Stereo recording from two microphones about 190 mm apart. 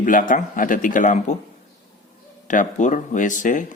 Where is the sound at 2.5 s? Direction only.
40° left (ahead or behind).